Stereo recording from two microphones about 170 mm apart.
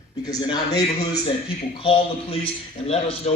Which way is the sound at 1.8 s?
30° left (ahead or behind).